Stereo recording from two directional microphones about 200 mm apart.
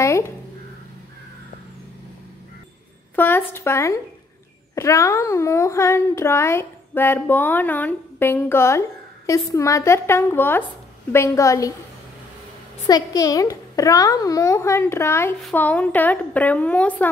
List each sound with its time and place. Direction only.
0.0 s a sound: 15° left (ahead or behind)
3.2 s a child's voice: 10° left (ahead or behind)
12.8 s a child's voice: 20° left (ahead or behind)